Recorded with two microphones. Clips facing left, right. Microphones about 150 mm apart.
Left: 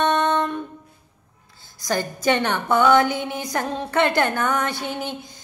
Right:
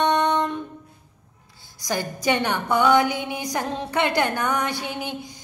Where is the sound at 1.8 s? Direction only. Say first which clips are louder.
Left 2 dB; 15° right (ahead or behind).